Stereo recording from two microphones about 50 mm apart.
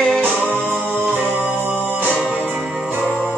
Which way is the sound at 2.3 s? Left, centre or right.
Right.